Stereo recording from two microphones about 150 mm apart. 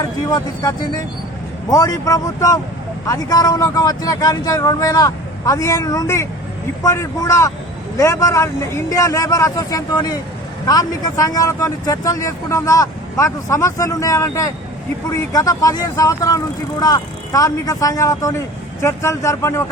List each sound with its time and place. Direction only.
0.3 s speech: 25° left (ahead or behind)